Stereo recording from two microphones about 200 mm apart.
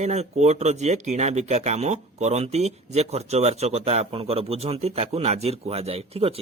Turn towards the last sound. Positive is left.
turn(degrees=-30)  # may be behind; listen again after turning